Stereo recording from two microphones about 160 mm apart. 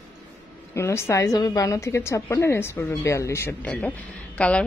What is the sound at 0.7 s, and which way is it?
A woman's voice, 15° left (ahead or behind).